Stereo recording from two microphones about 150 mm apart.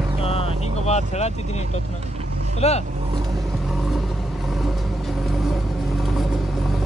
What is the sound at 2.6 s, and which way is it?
Speech, 45° left (ahead or behind).